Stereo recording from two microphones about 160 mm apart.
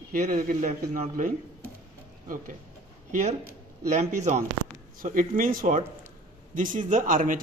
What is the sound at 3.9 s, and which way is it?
Speech, 50° right (ahead or behind).